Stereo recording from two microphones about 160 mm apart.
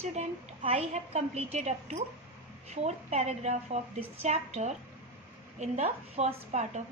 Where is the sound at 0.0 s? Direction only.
45° right (ahead or behind).